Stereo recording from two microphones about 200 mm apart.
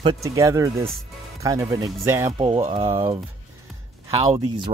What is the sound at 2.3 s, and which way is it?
Speech, 25° right (ahead or behind).